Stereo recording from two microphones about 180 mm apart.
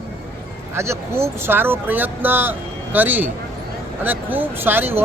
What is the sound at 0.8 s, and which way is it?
A man's voice, 15° right (ahead or behind).